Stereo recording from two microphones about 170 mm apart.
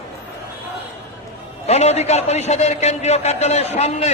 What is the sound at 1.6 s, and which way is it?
A man's voice, 40° left (ahead or behind).